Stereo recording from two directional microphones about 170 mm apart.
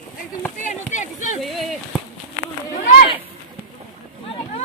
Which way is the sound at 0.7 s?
45° left (ahead or behind).